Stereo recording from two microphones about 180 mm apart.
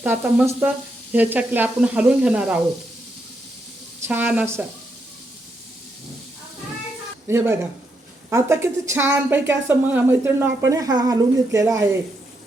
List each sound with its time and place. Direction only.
0.0 s a woman's voice: 10° right (ahead or behind)
4.0 s a woman's voice: 10° right (ahead or behind)
7.3 s a woman's voice: 15° right (ahead or behind)